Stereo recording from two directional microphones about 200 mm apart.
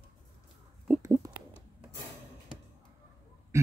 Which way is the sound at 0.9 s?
15° right (ahead or behind).